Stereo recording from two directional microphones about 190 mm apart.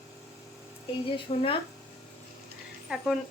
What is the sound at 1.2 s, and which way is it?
Speech, 25° left (ahead or behind).